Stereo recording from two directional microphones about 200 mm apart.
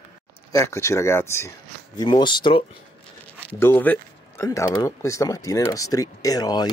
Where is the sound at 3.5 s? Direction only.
10° left (ahead or behind).